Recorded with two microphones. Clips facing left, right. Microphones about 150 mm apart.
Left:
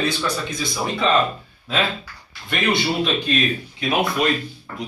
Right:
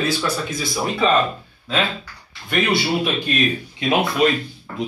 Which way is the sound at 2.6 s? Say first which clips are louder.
Left 1 dB; 10° right (ahead or behind).